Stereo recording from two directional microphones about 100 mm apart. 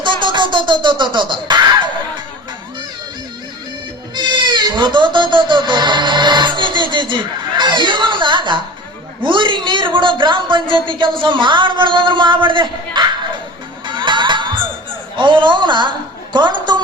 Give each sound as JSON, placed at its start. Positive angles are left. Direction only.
{"t": 0.0, "sound": "music", "side_deg": -55}
{"t": 4.1, "sound": "cat", "side_deg": -50}
{"t": 9.2, "sound": "speech", "side_deg": -55}
{"t": 13.8, "sound": "crowd", "side_deg": -50}
{"t": 15.1, "sound": "a woman's voice", "side_deg": -55}